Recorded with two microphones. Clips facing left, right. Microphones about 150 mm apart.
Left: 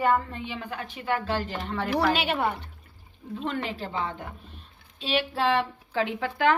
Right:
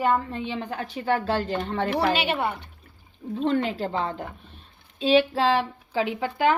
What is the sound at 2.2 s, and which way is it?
Speech, 10° right (ahead or behind).